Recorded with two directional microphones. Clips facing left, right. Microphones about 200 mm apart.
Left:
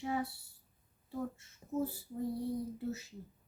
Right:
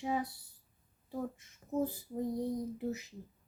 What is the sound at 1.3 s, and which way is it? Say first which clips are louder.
A child's voice: right 4 dB; 15° right (ahead or behind).